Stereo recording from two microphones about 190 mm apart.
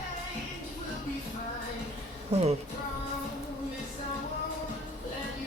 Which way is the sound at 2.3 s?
35° right (ahead or behind).